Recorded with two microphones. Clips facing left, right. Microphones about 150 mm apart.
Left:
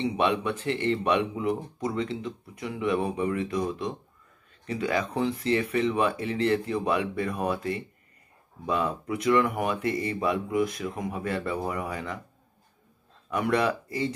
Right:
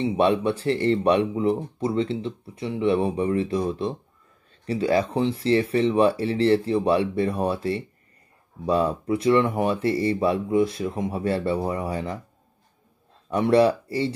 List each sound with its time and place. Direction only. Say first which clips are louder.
0.0 s speech: right 5 dB; 35° right (ahead or behind)
13.3 s speech: right 7 dB; 30° right (ahead or behind)